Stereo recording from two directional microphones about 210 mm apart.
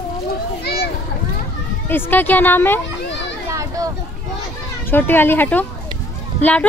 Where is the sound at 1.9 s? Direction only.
10° left (ahead or behind).